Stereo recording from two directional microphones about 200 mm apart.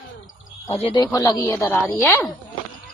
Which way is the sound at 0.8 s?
20° left (ahead or behind).